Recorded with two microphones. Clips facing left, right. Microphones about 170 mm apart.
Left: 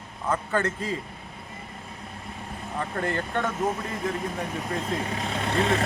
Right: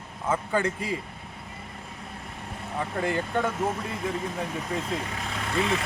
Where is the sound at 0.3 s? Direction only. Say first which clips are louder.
Even; 10° right (ahead or behind).